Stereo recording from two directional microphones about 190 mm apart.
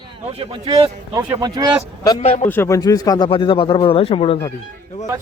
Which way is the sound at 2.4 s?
10° left (ahead or behind).